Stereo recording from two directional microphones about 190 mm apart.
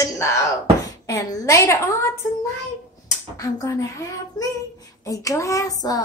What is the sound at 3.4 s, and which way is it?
A woman's voice, 20° left (ahead or behind).